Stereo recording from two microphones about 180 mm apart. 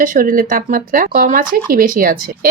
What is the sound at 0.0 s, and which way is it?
Speech, 50° right (ahead or behind).